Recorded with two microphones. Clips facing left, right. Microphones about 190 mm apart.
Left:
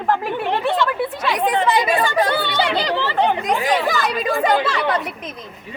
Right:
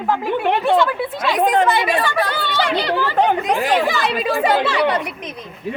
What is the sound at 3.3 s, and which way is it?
Speech, 45° right (ahead or behind).